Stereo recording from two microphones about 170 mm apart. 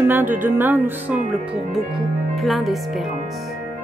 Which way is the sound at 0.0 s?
10° right (ahead or behind).